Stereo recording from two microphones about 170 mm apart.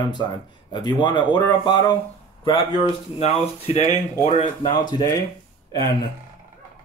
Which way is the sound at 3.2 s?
40° left (ahead or behind).